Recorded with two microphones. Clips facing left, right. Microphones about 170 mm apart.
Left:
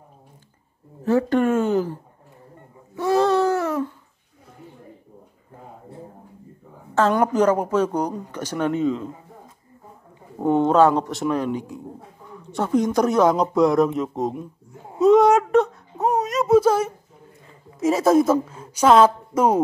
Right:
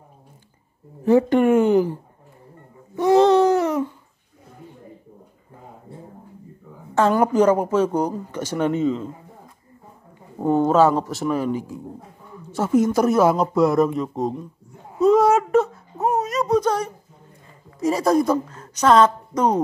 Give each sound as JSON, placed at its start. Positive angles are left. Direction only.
{"t": 1.0, "sound": "speech", "side_deg": -15}
{"t": 3.0, "sound": "a sound", "side_deg": -20}
{"t": 7.0, "sound": "speech", "side_deg": -10}
{"t": 10.5, "sound": "speech", "side_deg": -5}
{"t": 15.0, "sound": "wail", "side_deg": 0}
{"t": 17.7, "sound": "a woman's voice", "side_deg": 0}